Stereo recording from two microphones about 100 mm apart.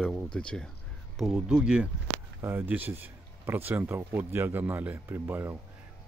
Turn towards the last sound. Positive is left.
turn(degrees=-25)  # may be behind; listen again after turning